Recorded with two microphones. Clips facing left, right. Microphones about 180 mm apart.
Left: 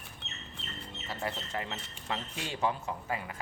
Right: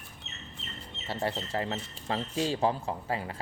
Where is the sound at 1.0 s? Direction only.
30° right (ahead or behind).